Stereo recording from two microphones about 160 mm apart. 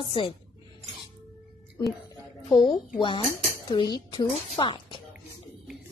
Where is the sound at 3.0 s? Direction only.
30° left (ahead or behind).